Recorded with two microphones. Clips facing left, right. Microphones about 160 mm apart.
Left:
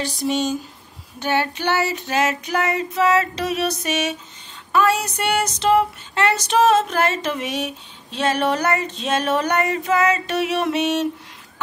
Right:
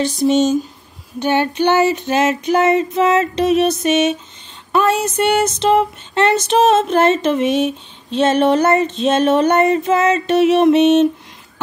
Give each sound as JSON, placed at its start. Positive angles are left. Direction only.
{"t": 0.0, "sound": "female singing", "side_deg": -20}